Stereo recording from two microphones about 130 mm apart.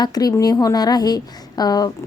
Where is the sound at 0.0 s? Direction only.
30° left (ahead or behind).